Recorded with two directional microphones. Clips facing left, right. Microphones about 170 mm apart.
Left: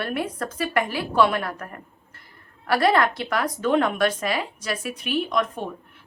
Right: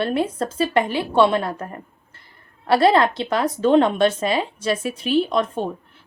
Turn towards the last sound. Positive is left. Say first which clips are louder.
# right 3 dB
turn(degrees=-30)  # may be behind; listen again after turning